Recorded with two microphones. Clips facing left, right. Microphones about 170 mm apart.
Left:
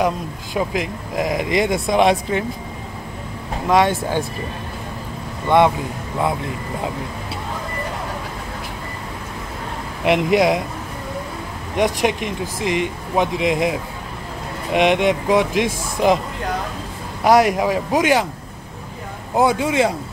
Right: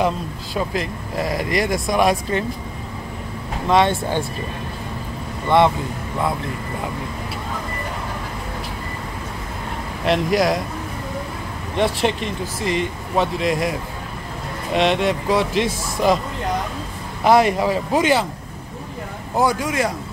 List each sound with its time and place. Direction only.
0.6 s speech: 15° left (ahead or behind)
3.6 s speech: 10° left (ahead or behind)
10.0 s speech: 20° left (ahead or behind)
11.7 s speech: 15° left (ahead or behind)
17.2 s speech: 10° left (ahead or behind)
19.3 s speech: 25° left (ahead or behind)